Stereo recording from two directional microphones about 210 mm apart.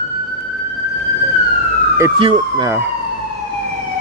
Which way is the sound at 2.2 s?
25° right (ahead or behind).